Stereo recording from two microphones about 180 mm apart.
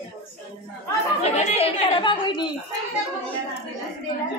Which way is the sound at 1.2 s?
35° left (ahead or behind).